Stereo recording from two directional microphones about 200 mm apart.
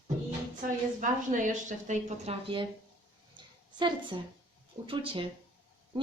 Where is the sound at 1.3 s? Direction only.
40° right (ahead or behind).